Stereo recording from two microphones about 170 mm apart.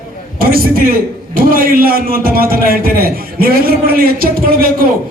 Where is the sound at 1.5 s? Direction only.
60° right (ahead or behind).